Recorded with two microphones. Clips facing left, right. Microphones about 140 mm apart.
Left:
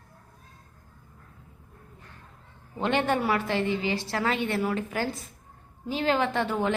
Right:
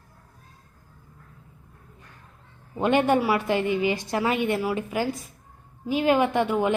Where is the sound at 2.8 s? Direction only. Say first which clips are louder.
Right 5 dB; 15° right (ahead or behind).